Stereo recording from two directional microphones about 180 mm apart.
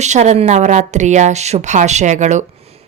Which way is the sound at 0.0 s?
40° right (ahead or behind).